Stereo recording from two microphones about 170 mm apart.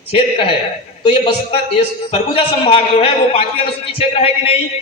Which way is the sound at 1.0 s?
35° left (ahead or behind).